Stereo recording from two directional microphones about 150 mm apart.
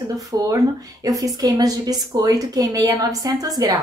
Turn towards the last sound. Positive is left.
turn(degrees=-25)  # may be behind; listen again after turning